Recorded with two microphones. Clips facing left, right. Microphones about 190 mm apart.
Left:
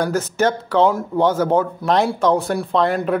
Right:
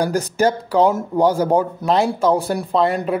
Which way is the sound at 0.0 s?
15° right (ahead or behind).